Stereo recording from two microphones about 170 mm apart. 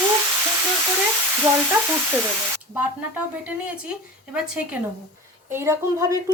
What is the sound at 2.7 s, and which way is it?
Speech, 10° right (ahead or behind).